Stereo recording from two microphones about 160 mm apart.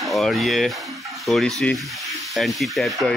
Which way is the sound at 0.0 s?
Centre (ahead or behind).